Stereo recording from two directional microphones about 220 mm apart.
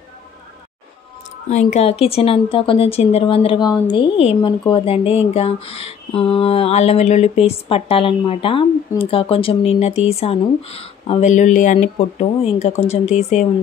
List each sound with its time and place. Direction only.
1.5 s speech: 30° left (ahead or behind)